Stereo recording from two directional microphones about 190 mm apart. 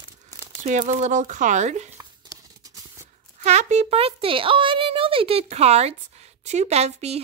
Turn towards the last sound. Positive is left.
turn(degrees=-35)  # may be behind; listen again after turning